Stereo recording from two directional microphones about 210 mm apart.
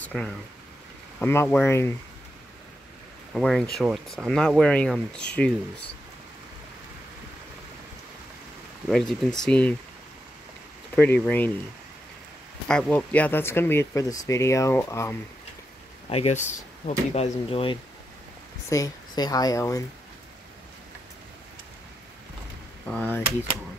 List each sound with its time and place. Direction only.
0.0 s speech: 5° left (ahead or behind)
3.3 s speech: centre (ahead or behind)
8.8 s speech: centre (ahead or behind)
11.0 s speech: 5° left (ahead or behind)
12.6 s speech: 5° left (ahead or behind)
16.1 s speech: 30° left (ahead or behind)
22.8 s speech: 5° left (ahead or behind)